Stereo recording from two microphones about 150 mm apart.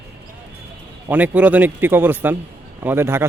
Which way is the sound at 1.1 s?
10° right (ahead or behind).